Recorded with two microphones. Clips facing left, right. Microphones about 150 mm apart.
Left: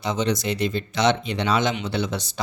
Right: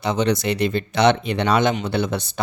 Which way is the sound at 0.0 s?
65° right (ahead or behind).